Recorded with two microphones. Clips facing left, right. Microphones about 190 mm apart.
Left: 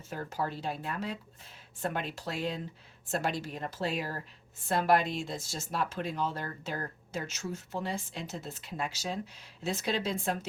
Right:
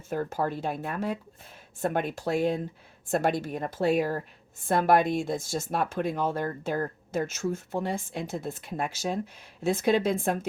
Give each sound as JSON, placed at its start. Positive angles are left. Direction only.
{"t": 0.1, "sound": "speech", "side_deg": -50}